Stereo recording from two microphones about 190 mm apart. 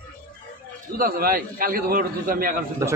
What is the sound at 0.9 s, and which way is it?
A man's voice, 50° right (ahead or behind).